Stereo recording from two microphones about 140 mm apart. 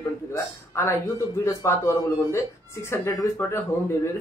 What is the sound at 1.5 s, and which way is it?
Speech, 20° left (ahead or behind).